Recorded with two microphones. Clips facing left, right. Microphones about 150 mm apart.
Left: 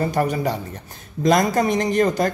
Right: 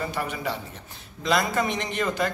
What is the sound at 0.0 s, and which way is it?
A woman's voice, 40° left (ahead or behind).